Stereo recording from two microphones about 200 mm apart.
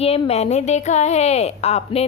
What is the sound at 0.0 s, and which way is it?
A woman's voice, 30° left (ahead or behind).